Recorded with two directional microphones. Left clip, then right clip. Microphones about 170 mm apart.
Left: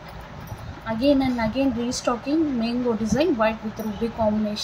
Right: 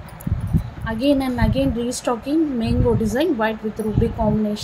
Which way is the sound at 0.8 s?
30° right (ahead or behind).